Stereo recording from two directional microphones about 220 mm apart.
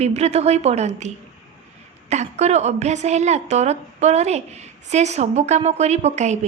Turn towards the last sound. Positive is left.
turn(degrees=-30)  # may be behind; listen again after turning